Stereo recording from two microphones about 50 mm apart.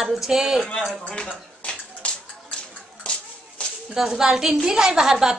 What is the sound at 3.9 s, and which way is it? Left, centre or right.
Speech, centre.